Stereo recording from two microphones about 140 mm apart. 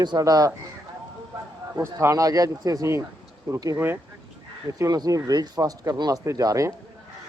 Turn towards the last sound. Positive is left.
turn(degrees=-25)  # may be behind; listen again after turning